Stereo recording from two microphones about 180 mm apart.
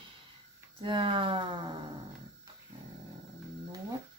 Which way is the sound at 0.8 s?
25° right (ahead or behind).